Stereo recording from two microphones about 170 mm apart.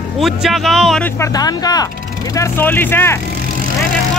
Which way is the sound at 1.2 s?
20° left (ahead or behind).